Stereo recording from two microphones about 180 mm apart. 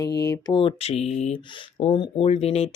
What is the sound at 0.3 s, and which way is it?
Speech, 25° left (ahead or behind).